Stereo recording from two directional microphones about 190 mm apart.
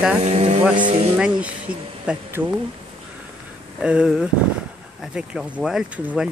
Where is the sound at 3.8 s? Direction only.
5° right (ahead or behind).